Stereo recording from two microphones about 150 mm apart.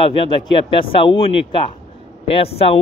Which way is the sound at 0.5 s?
35° left (ahead or behind).